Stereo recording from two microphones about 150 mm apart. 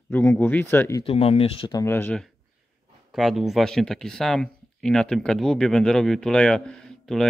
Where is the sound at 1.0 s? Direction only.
40° left (ahead or behind).